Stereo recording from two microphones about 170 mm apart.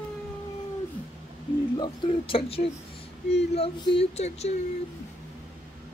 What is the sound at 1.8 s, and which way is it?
Speech, 30° left (ahead or behind).